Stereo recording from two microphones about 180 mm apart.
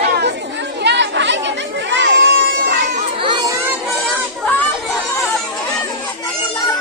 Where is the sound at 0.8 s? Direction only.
75° right (ahead or behind).